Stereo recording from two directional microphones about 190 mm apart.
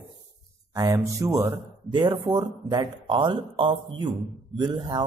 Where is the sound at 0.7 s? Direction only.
15° right (ahead or behind).